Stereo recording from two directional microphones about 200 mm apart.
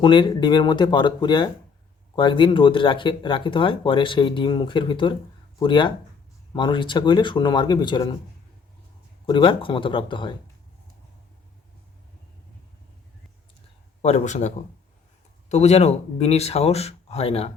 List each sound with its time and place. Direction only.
0.0 s speech: 25° left (ahead or behind)
9.2 s speech: 25° left (ahead or behind)
14.0 s speech: 35° left (ahead or behind)